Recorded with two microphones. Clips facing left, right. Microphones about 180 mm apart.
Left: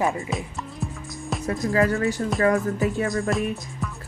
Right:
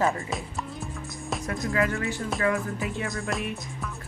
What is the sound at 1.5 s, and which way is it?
Music, 35° left (ahead or behind).